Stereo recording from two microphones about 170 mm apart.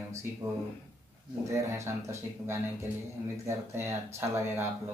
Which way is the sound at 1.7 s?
15° right (ahead or behind).